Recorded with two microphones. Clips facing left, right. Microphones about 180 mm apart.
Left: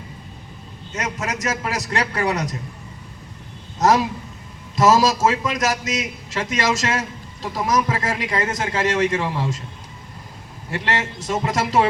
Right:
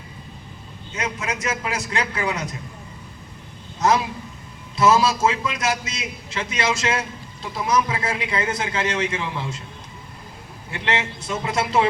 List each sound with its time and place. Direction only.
0.9 s a man's voice: 40° left (ahead or behind)
3.8 s a man's voice: 40° left (ahead or behind)
10.8 s a man's voice: 40° left (ahead or behind)